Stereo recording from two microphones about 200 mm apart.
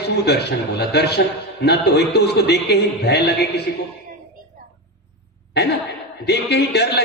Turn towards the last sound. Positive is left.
turn(degrees=55)  # may be behind; listen again after turning